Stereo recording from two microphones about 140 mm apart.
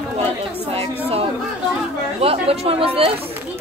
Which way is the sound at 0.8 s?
45° right (ahead or behind).